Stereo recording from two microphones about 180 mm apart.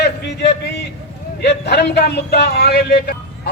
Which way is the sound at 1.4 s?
65° left (ahead or behind).